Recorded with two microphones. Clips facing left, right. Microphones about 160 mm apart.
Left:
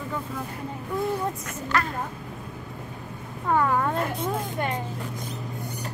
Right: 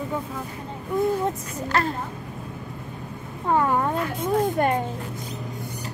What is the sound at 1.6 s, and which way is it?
Speech, 30° right (ahead or behind).